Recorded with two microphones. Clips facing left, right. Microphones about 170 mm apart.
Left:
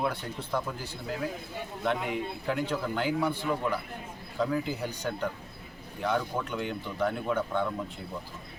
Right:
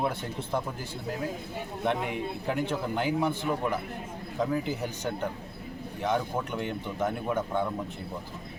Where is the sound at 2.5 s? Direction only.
20° right (ahead or behind).